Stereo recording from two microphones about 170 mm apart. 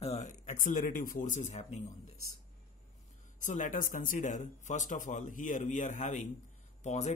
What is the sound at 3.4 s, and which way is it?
Speech, 45° left (ahead or behind).